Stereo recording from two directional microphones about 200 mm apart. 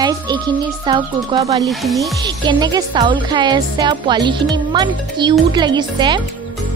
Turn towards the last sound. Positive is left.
turn(degrees=-25)  # may be behind; listen again after turning